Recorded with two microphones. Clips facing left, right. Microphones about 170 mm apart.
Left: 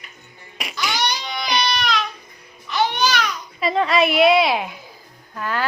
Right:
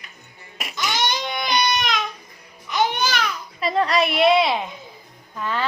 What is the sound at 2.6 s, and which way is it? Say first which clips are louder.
Music: left 1 dB; 15° right (ahead or behind).